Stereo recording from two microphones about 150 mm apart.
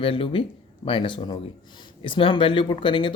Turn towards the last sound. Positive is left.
turn(degrees=35)  # may be behind; listen again after turning